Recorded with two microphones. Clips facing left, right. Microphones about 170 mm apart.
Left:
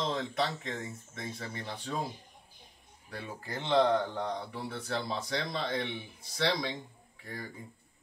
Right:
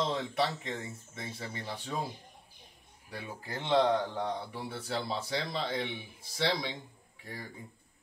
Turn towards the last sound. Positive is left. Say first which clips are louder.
# left 2 dB
turn(degrees=-10)  # may be behind; listen again after turning